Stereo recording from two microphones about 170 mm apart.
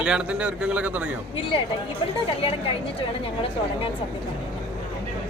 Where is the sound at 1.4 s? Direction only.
30° left (ahead or behind).